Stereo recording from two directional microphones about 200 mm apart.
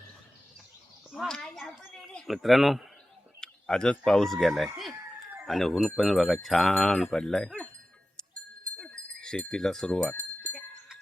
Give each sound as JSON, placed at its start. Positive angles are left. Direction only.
{"t": 1.1, "sound": "wind chime", "side_deg": 5}
{"t": 1.9, "sound": "speech", "side_deg": 0}
{"t": 5.5, "sound": "wind chime", "side_deg": 0}
{"t": 8.6, "sound": "a sound", "side_deg": 5}
{"t": 10.4, "sound": "goat", "side_deg": 0}